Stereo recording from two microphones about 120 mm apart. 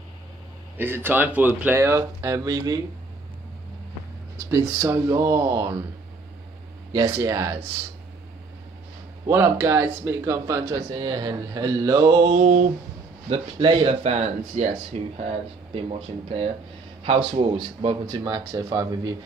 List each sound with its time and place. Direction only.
0.7 s speech: 20° right (ahead or behind)
4.4 s speech: 25° right (ahead or behind)
7.1 s speech: 25° right (ahead or behind)
9.3 s speech: 20° right (ahead or behind)
12.4 s a sound: 90° right
13.3 s a man's voice: 45° right (ahead or behind)
14.0 s a man's voice: 70° right (ahead or behind); by 17.9 s 50° right (ahead or behind)
18.0 s speech: 35° right (ahead or behind)